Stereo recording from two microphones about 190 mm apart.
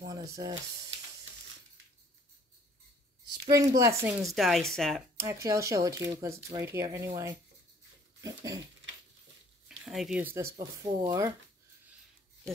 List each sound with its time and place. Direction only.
0.0 s a sound: 20° right (ahead or behind)
3.4 s speech: 20° right (ahead or behind)
4.3 s speech: centre (ahead or behind)
5.1 s speech: 15° right (ahead or behind)
8.2 s dog: 20° right (ahead or behind)
9.7 s speech: centre (ahead or behind); by 11.3 s 20° right (ahead or behind)